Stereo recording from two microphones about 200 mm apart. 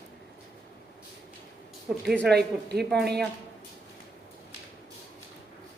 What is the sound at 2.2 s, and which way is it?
Speech, 55° right (ahead or behind).